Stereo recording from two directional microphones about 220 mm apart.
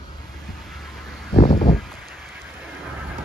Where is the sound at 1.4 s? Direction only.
35° left (ahead or behind).